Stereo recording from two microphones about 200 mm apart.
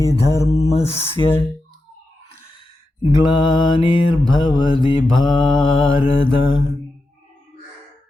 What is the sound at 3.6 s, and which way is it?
Mantra, 25° left (ahead or behind).